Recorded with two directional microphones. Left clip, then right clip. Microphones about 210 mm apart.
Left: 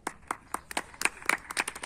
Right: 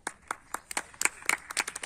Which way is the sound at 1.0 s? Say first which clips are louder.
Even; 45° right (ahead or behind).